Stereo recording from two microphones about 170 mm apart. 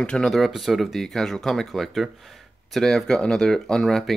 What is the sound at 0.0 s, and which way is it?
Speech, 5° left (ahead or behind).